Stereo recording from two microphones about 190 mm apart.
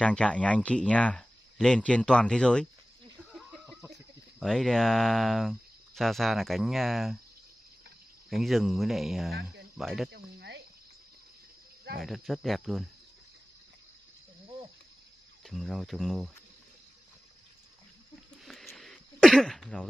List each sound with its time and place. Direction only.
0.0 s speech: 5° left (ahead or behind)
3.3 s a sound: centre (ahead or behind)
4.4 s speech: 5° left (ahead or behind)
8.3 s speech: centre (ahead or behind)
9.3 s speech: 55° right (ahead or behind)
9.8 s speech: centre (ahead or behind)
10.1 s cricket: 60° right (ahead or behind)
12.0 s speech: centre (ahead or behind)
15.4 s speech: centre (ahead or behind)
18.4 s throat clearing: centre (ahead or behind)